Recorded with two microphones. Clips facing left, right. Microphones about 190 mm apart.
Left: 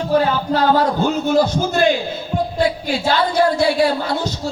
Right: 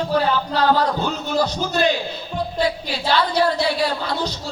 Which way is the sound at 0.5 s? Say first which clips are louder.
Left 4 dB; 45° left (ahead or behind).